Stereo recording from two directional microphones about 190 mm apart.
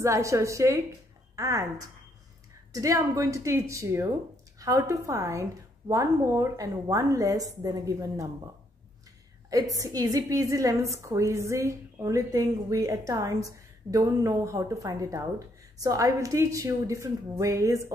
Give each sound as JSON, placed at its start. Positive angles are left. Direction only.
{"t": 0.0, "sound": "a woman's voice", "side_deg": -15}
{"t": 9.5, "sound": "a woman's voice", "side_deg": -15}